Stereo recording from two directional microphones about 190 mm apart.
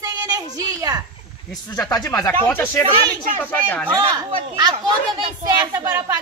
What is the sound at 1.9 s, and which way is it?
Speech, 20° left (ahead or behind).